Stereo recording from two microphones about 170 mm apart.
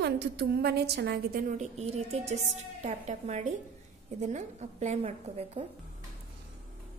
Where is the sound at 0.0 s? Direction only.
75° right (ahead or behind).